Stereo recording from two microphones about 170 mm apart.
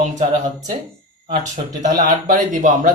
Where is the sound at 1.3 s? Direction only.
45° right (ahead or behind).